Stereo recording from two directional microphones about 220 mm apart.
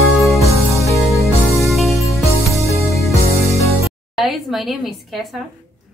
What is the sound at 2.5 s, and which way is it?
Music, 15° right (ahead or behind).